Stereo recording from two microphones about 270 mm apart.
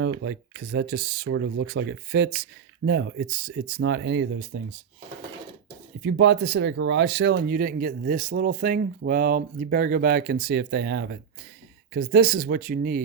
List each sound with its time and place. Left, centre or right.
0.0 s speech: right
6.0 s speech: right